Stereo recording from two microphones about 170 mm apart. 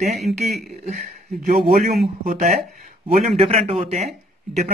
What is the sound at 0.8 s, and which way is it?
Speech, 45° right (ahead or behind).